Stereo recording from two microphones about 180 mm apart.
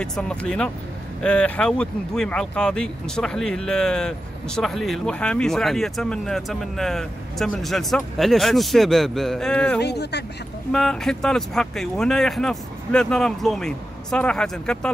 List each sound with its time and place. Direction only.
0.0 s speech: 5° left (ahead or behind)
9.8 s speech: 65° left (ahead or behind)
10.7 s speech: 5° left (ahead or behind)